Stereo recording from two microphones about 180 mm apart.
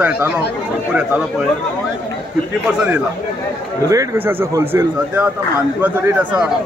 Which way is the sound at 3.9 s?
15° right (ahead or behind).